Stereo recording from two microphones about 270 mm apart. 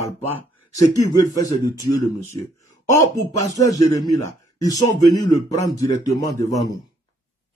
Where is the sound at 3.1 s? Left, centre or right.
Centre.